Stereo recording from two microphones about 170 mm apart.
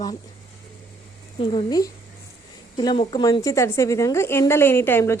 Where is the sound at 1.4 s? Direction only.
25° left (ahead or behind).